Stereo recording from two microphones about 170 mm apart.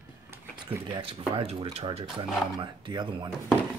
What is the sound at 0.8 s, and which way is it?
Speech, 30° right (ahead or behind).